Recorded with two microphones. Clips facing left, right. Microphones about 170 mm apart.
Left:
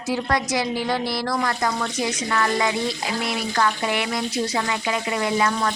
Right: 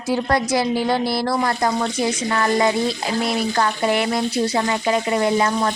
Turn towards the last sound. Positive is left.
turn(degrees=-30)  # may be behind; listen again after turning